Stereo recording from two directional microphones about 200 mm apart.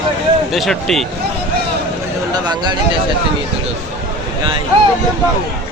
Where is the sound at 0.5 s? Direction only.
Centre (ahead or behind).